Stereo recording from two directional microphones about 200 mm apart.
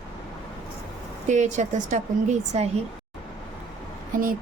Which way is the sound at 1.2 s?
35° right (ahead or behind).